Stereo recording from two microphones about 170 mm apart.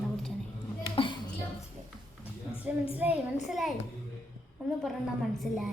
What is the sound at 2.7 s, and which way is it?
A woman's voice, 10° right (ahead or behind).